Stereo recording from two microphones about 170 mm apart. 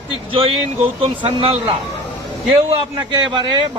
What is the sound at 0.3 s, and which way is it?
A man's voice, 30° right (ahead or behind).